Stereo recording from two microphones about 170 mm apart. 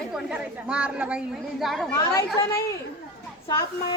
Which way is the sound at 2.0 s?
15° left (ahead or behind).